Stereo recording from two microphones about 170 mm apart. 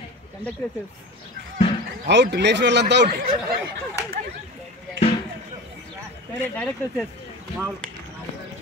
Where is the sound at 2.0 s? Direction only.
90° right.